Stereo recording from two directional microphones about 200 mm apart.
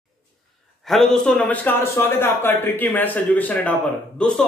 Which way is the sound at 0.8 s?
Centre (ahead or behind).